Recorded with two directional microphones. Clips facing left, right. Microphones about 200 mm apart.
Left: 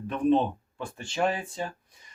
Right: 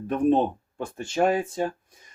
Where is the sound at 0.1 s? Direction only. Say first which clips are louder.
Right 2 dB; 45° right (ahead or behind).